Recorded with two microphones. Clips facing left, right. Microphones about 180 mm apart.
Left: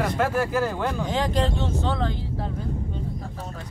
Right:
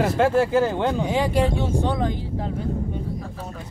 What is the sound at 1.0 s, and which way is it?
Speech, 10° right (ahead or behind).